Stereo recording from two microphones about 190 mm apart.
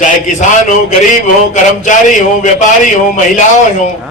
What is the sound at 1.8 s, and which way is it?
A man's voice, 40° left (ahead or behind).